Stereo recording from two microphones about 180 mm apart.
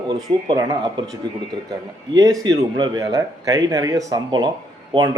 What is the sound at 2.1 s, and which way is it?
A man's voice, 20° right (ahead or behind).